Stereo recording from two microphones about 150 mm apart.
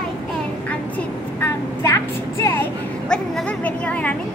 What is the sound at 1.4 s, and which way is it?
A woman's voice, 20° left (ahead or behind).